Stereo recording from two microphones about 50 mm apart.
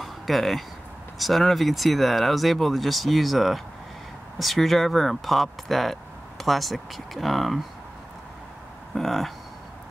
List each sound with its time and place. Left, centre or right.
0.0 s a sound: centre
1.1 s speech: centre
8.9 s speech: centre